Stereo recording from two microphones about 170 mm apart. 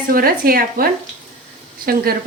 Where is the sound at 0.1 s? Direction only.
60° right (ahead or behind).